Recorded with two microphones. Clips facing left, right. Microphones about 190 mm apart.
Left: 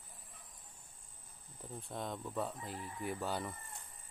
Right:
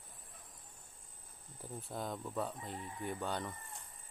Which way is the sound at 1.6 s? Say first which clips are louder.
Right 1 dB; 5° right (ahead or behind).